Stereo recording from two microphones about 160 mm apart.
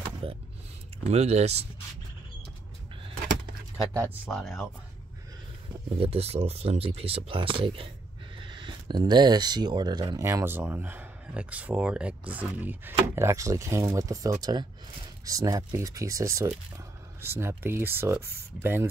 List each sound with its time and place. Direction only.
0.2 s speech: 35° right (ahead or behind)
4.3 s speech: centre (ahead or behind)
5.9 s speech: 40° right (ahead or behind); by 18.9 s 15° right (ahead or behind)